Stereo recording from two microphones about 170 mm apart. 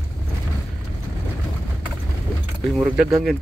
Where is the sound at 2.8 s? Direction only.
Centre (ahead or behind).